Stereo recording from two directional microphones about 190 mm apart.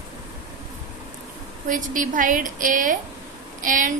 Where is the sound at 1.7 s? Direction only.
45° right (ahead or behind).